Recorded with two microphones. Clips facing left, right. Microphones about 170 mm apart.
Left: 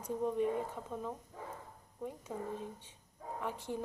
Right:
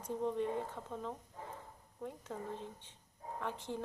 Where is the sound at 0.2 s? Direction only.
10° left (ahead or behind).